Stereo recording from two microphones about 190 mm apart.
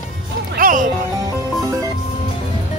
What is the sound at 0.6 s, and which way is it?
Music, 45° right (ahead or behind).